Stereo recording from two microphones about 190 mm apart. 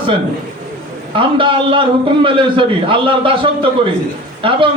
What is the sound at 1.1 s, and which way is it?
A man's voice, 25° right (ahead or behind).